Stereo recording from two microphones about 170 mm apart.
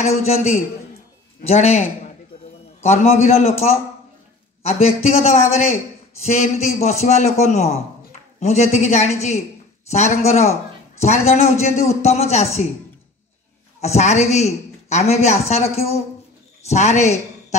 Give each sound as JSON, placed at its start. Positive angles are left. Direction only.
{"t": 0.0, "sound": "a woman's voice", "side_deg": 40}
{"t": 13.7, "sound": "a woman's voice", "side_deg": 40}